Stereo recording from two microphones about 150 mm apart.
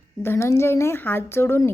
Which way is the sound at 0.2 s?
15° left (ahead or behind).